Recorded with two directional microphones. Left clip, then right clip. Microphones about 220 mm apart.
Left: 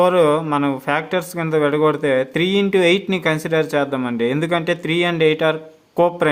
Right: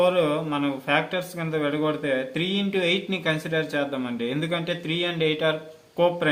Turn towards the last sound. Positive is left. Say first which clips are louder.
# left 6 dB
turn(degrees=35)  # may be behind; listen again after turning